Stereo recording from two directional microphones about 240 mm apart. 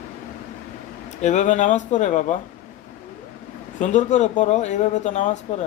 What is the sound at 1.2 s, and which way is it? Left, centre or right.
Speech, left.